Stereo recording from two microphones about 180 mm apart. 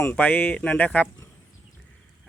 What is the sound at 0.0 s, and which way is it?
Speech, 10° left (ahead or behind).